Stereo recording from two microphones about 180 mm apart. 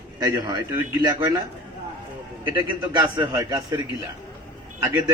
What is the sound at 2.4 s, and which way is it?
A man's voice, 25° right (ahead or behind).